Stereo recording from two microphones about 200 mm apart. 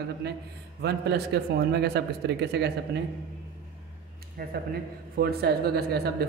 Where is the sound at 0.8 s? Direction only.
55° right (ahead or behind).